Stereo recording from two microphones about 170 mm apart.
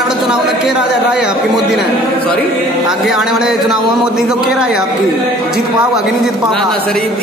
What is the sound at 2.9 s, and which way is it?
A man's voice, centre (ahead or behind).